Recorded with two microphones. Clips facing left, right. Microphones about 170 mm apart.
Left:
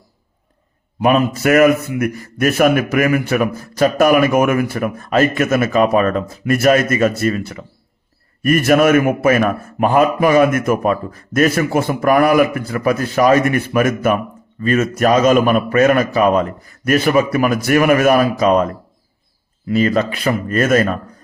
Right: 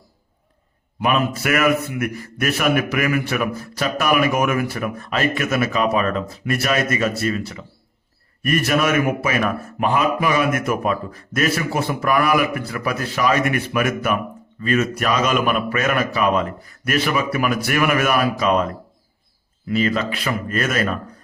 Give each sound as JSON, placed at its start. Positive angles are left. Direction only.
{"t": 0.9, "sound": "a man's voice", "side_deg": 40}
{"t": 19.7, "sound": "a man's voice", "side_deg": 40}